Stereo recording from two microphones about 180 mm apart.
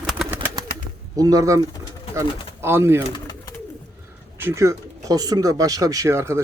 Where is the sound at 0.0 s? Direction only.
5° right (ahead or behind).